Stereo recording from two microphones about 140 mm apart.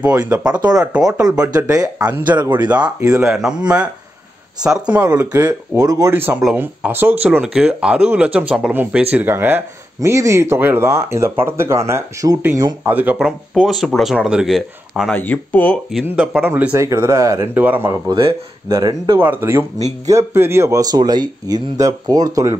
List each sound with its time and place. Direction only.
0.7 s speech: 5° right (ahead or behind)
1.4 s speech: 25° right (ahead or behind)
3.3 s speech: 5° right (ahead or behind)
13.6 s speech: centre (ahead or behind)
15.1 s speech: 15° left (ahead or behind)
15.9 s speech: 5° right (ahead or behind)
18.1 s speech: 30° right (ahead or behind)
19.2 s speech: 15° right (ahead or behind)